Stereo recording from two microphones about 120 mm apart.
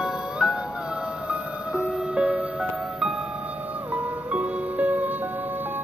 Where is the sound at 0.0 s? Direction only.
5° right (ahead or behind).